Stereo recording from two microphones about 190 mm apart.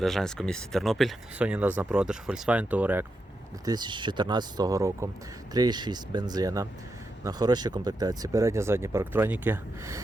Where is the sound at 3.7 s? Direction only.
25° right (ahead or behind).